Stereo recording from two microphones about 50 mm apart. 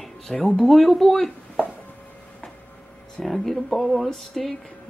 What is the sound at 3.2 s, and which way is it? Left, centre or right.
Speech, centre.